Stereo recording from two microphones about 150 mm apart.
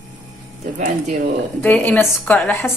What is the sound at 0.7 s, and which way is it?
Speech, 55° right (ahead or behind).